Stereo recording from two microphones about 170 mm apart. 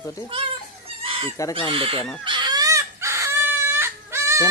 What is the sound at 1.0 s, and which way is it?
Chicken, 35° right (ahead or behind).